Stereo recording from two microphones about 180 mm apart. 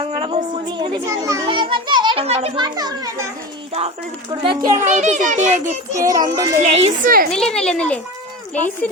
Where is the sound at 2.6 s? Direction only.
20° right (ahead or behind).